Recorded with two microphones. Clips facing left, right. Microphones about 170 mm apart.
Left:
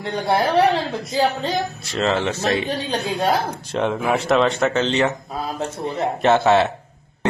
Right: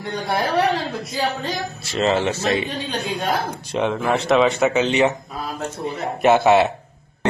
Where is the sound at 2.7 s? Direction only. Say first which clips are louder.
Left 2 dB; 30° left (ahead or behind).